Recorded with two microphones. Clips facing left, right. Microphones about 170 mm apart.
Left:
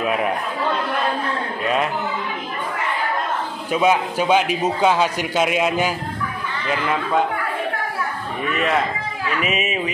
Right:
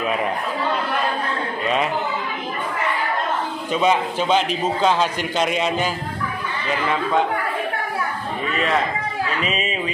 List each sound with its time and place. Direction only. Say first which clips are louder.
0.0 s speech: left 1 dB; 5° left (ahead or behind)
3.7 s a man's voice: left 1 dB; 5° left (ahead or behind)
9.4 s a man's voice: left 2 dB; 15° left (ahead or behind)